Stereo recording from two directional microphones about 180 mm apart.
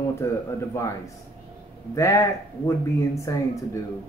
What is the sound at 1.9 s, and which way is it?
A man's voice, 15° left (ahead or behind).